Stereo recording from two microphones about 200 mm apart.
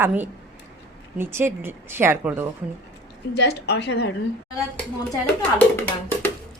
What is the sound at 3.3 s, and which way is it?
Speech, 60° left (ahead or behind).